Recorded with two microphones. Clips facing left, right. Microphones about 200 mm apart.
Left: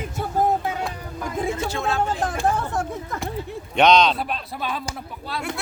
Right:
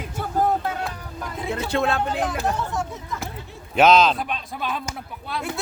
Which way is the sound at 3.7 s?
5° right (ahead or behind).